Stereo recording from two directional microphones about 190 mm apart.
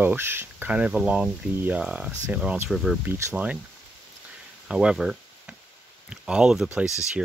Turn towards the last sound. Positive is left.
turn(degrees=-5)  # may be behind; listen again after turning